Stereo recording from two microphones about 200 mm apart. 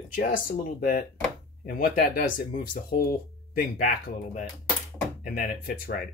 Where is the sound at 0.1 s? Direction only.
45° left (ahead or behind).